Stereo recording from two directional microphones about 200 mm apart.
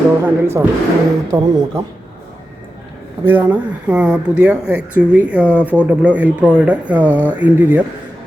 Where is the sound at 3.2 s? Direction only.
10° right (ahead or behind).